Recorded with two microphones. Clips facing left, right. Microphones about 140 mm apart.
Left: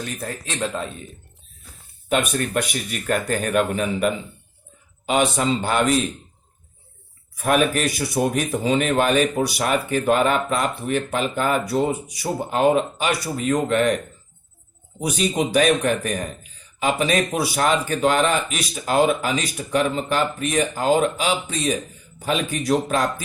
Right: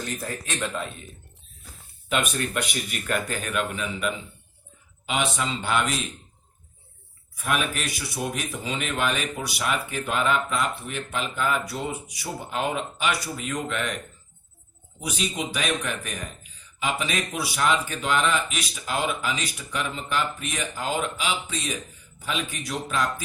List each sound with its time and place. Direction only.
0.6 s speech: 35° left (ahead or behind)
2.0 s a man's voice: 45° left (ahead or behind)
7.3 s a man's voice: 45° left (ahead or behind)